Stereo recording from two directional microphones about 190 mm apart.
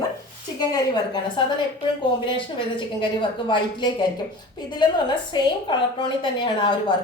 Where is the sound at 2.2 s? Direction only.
25° left (ahead or behind).